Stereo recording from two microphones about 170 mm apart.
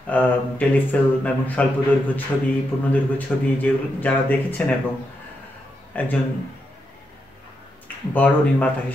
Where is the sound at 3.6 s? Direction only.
10° left (ahead or behind).